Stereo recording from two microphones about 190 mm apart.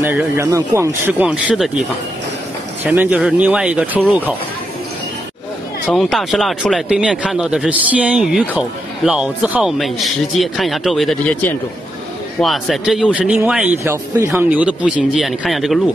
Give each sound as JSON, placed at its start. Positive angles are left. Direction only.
{"t": 0.0, "sound": "speech", "side_deg": -15}
{"t": 2.8, "sound": "speech", "side_deg": -10}
{"t": 5.9, "sound": "speech", "side_deg": 5}